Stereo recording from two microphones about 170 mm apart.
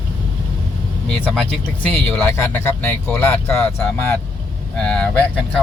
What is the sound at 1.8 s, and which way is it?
Speech, 10° left (ahead or behind).